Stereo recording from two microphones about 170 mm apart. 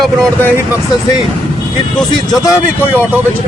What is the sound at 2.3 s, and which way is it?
Speech, 20° left (ahead or behind).